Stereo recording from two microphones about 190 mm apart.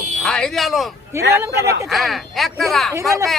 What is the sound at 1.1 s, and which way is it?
Speech, 15° right (ahead or behind).